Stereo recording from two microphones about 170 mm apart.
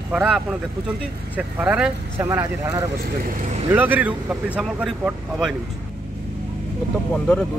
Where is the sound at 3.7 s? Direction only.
10° right (ahead or behind).